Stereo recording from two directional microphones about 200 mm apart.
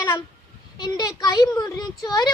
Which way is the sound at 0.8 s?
20° left (ahead or behind).